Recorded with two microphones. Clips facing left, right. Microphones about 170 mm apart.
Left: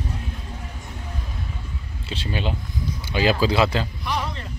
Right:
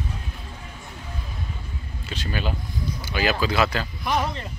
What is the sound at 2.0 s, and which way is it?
Speech, 30° left (ahead or behind).